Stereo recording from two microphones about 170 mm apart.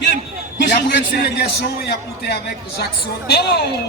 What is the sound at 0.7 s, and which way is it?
A man's voice, 80° left.